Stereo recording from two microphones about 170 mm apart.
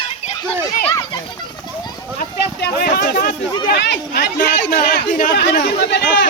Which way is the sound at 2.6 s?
70° left (ahead or behind).